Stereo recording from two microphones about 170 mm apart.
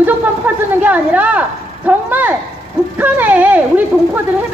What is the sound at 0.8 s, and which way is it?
Speech, 10° right (ahead or behind).